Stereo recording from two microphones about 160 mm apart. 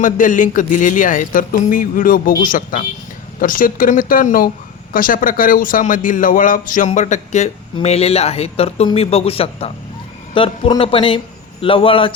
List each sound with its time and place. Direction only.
0.0 s speech: 55° left (ahead or behind); by 12.1 s 35° left (ahead or behind)